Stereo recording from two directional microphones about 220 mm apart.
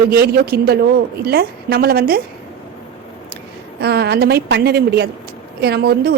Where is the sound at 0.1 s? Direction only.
45° right (ahead or behind).